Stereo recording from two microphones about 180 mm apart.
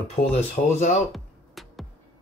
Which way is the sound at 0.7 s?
40° left (ahead or behind).